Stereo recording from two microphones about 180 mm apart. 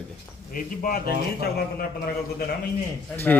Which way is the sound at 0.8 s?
55° left (ahead or behind).